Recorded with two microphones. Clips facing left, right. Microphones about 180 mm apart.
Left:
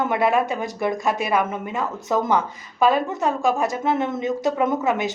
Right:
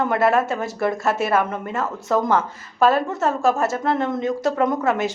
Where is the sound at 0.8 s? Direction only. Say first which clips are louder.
Right 2 dB; 15° left (ahead or behind).